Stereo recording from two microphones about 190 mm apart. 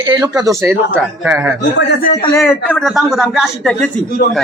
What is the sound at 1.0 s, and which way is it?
Speech, 5° right (ahead or behind).